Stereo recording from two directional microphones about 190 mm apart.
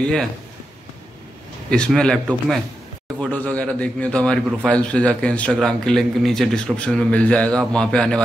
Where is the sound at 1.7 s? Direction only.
5° left (ahead or behind).